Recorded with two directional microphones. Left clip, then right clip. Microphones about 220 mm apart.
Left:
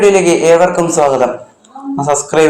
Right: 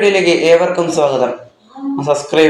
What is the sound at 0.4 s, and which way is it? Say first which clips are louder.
Speech: left 2 dB; 20° left (ahead or behind).